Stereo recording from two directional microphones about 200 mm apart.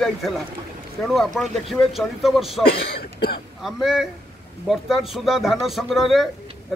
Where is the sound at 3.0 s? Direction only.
50° left (ahead or behind).